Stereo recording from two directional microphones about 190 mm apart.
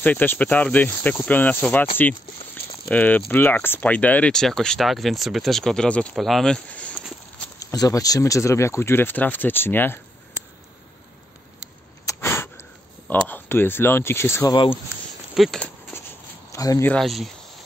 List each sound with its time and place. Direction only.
0.0 s speech: 10° left (ahead or behind)
2.9 s speech: 10° left (ahead or behind)
7.5 s speech: 20° left (ahead or behind)
12.1 s a sound: 15° left (ahead or behind)
13.1 s speech: 10° left (ahead or behind)
15.3 s a sound: centre (ahead or behind)
16.5 s speech: 15° left (ahead or behind)
16.9 s speech: centre (ahead or behind)